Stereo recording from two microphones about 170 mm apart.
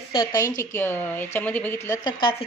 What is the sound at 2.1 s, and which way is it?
Speech, 25° left (ahead or behind).